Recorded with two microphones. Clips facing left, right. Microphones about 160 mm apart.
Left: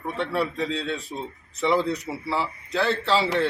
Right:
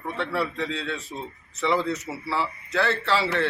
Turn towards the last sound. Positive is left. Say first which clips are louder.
# left 1 dB
turn(degrees=15)  # may be behind; listen again after turning